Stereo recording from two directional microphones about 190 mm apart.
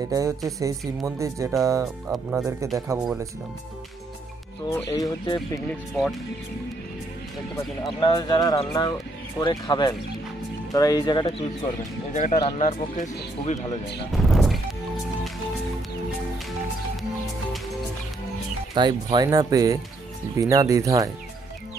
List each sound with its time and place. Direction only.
0.1 s speech: 15° right (ahead or behind)
4.6 s speech: 15° left (ahead or behind)
5.7 s speech: centre (ahead or behind)
7.8 s speech: 25° left (ahead or behind)
12.1 s speech: 40° left (ahead or behind)
14.1 s music: centre (ahead or behind)
18.8 s speech: 20° right (ahead or behind)